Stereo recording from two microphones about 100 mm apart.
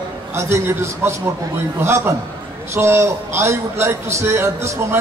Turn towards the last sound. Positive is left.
turn(degrees=-25)  # may be behind; listen again after turning